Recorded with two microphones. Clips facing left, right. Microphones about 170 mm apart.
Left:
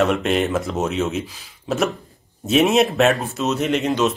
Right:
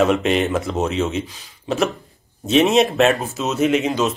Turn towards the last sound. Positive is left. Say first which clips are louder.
# right 1 dB
turn(degrees=0)  # may be behind; listen again after turning